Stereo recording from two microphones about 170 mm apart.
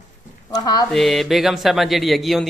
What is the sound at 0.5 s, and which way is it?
Speech, 25° left (ahead or behind).